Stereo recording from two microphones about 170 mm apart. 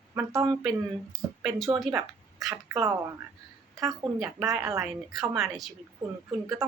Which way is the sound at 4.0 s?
Centre (ahead or behind).